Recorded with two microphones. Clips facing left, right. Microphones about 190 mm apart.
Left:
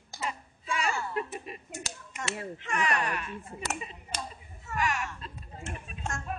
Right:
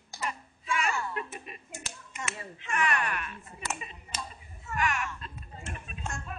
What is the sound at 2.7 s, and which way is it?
Speech, 35° left (ahead or behind).